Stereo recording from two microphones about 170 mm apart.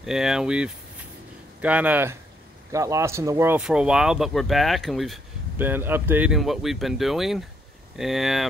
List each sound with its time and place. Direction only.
0.0 s speech: centre (ahead or behind)
5.6 s speech: 10° right (ahead or behind)